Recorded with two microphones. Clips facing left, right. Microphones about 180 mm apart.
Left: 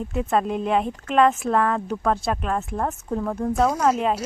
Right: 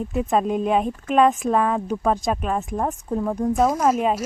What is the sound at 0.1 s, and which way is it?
A woman's voice, 15° right (ahead or behind).